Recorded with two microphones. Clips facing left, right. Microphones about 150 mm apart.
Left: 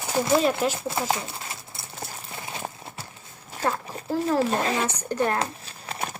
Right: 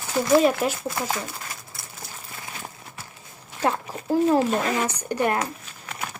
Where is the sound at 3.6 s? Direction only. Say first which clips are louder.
Right 3 dB; 15° right (ahead or behind).